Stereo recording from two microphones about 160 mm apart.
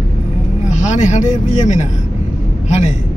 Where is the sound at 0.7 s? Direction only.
50° left (ahead or behind).